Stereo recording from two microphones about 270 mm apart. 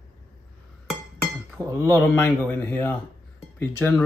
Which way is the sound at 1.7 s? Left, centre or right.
Centre.